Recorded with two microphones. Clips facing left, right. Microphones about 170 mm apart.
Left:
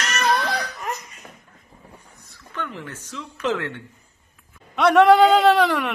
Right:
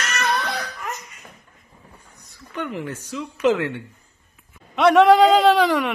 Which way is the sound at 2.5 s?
15° right (ahead or behind).